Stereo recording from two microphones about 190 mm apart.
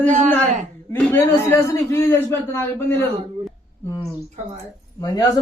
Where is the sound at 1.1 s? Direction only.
15° left (ahead or behind).